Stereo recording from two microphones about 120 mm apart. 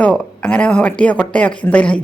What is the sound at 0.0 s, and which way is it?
A woman's voice, 10° left (ahead or behind).